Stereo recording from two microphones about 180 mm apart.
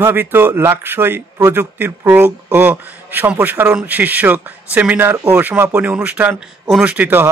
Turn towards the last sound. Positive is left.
turn(degrees=-10)  # may be behind; listen again after turning